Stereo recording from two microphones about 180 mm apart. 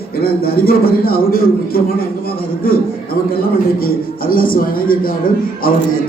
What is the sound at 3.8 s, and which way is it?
A man's voice, 55° left (ahead or behind).